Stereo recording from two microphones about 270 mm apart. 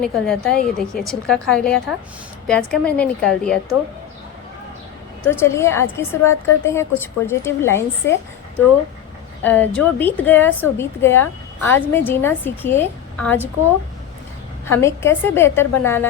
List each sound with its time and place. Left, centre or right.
0.0 s a woman's voice: centre
5.2 s a woman's voice: centre
9.4 s a woman's voice: centre
14.7 s a woman's voice: centre